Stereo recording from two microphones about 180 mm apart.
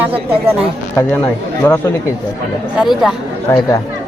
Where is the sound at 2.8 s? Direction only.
Centre (ahead or behind).